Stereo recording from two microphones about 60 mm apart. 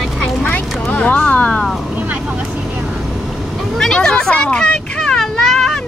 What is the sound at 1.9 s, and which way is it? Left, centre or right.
Vehicle, right.